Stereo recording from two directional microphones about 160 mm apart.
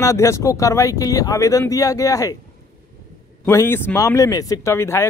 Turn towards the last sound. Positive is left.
turn(degrees=15)  # may be behind; listen again after turning